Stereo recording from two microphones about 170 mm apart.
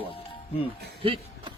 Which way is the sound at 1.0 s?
35° right (ahead or behind).